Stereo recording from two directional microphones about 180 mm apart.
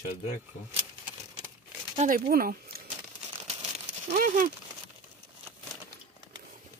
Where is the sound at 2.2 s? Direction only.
55° right (ahead or behind).